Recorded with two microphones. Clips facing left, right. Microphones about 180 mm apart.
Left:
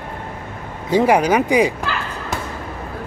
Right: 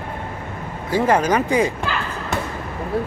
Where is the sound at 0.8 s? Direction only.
15° left (ahead or behind).